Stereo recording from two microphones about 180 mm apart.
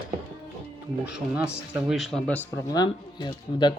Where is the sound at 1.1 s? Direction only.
5° right (ahead or behind).